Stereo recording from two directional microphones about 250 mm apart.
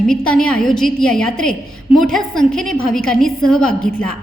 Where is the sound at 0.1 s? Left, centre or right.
Centre.